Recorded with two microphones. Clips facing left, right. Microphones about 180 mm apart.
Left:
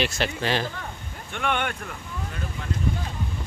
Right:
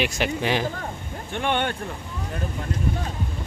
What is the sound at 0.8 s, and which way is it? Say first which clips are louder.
Speech: right 5 dB; 35° right (ahead or behind).